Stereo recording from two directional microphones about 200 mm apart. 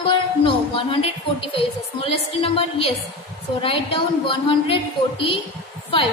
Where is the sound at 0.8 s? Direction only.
25° left (ahead or behind).